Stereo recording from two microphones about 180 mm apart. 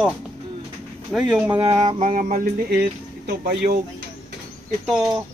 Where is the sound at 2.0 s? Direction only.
45° right (ahead or behind).